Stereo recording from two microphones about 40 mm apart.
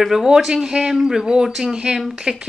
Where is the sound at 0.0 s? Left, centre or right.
Centre.